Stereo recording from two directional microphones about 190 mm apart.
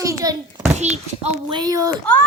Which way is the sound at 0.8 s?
35° right (ahead or behind).